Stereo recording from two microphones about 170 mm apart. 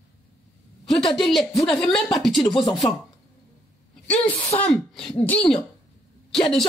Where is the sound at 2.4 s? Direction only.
25° left (ahead or behind).